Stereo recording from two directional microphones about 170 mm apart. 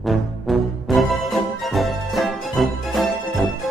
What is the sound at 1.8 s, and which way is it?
Music, centre (ahead or behind).